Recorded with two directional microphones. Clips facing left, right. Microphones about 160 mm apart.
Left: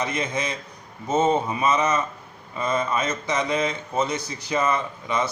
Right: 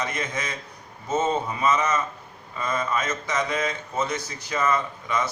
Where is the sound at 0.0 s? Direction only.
25° left (ahead or behind).